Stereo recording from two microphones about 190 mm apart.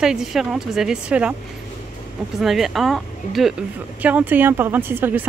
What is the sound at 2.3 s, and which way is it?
Speech, centre (ahead or behind).